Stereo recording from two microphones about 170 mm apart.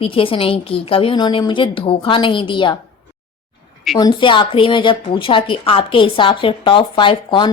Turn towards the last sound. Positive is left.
turn(degrees=30)  # may be behind; listen again after turning